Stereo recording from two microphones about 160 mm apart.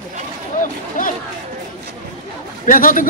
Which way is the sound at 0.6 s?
55° left (ahead or behind).